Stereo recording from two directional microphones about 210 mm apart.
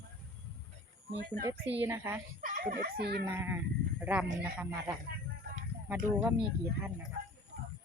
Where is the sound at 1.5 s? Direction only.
10° right (ahead or behind).